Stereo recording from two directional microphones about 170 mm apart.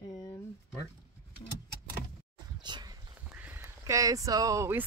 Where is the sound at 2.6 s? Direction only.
25° right (ahead or behind).